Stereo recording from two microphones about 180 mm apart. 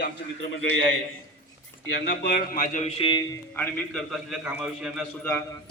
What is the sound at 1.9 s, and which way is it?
Speech, 60° left (ahead or behind).